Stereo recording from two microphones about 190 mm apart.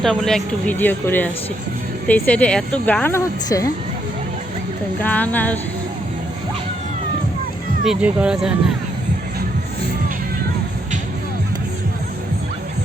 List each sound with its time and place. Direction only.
0.0 s speech: centre (ahead or behind)
5.0 s speech: 10° left (ahead or behind)
7.9 s speech: 5° right (ahead or behind)